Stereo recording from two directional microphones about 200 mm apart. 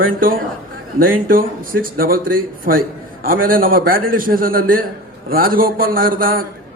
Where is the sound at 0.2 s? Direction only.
45° right (ahead or behind).